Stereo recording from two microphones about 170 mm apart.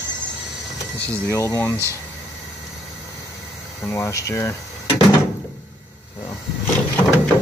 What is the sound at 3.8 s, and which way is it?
Speech, 15° left (ahead or behind).